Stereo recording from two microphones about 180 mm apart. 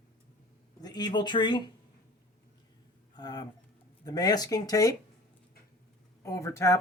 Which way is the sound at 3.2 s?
25° left (ahead or behind).